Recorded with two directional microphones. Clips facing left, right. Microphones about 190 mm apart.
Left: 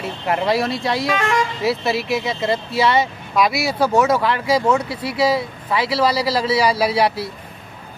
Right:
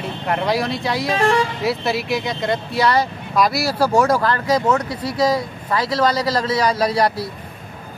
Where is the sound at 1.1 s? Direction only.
35° right (ahead or behind).